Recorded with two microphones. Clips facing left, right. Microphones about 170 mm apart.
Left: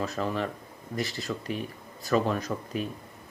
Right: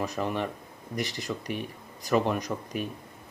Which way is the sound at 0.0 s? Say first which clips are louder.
Even; 15° right (ahead or behind).